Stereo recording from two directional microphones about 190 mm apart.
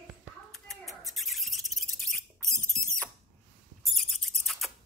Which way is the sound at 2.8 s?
40° right (ahead or behind).